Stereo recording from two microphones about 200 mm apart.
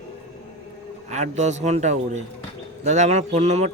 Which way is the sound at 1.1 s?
35° right (ahead or behind).